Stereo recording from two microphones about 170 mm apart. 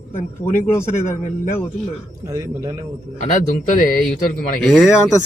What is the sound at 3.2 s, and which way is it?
Speech, 45° left (ahead or behind).